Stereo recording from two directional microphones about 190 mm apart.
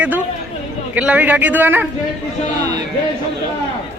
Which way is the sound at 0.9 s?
5° right (ahead or behind).